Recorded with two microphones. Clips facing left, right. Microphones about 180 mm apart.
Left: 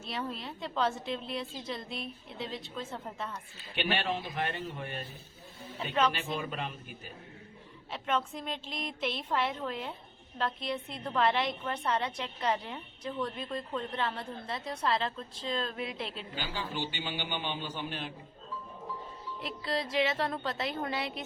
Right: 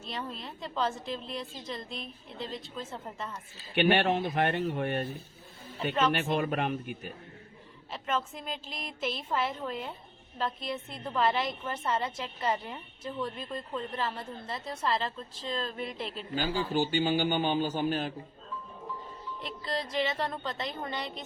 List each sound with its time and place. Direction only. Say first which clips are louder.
0.0 s a woman's voice: left 1 dB; centre (ahead or behind)
3.8 s speech: right 7 dB; 60° right (ahead or behind)
5.9 s a woman's voice: right 1 dB; centre (ahead or behind)
6.1 s speech: right 7 dB; 60° right (ahead or behind)
7.9 s a woman's voice: even; centre (ahead or behind)
16.6 s a man's voice: right 9 dB; 45° right (ahead or behind)
19.4 s a woman's voice: left 1 dB; centre (ahead or behind)